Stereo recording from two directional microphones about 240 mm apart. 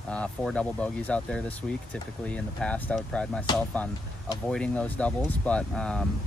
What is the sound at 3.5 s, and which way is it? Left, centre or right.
Speech, centre.